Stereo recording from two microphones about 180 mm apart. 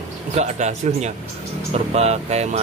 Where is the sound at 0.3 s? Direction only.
40° right (ahead or behind).